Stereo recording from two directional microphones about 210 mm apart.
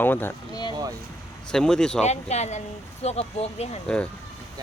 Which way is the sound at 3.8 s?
5° left (ahead or behind).